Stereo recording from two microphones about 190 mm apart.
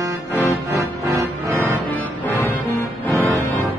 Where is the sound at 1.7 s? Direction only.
10° left (ahead or behind).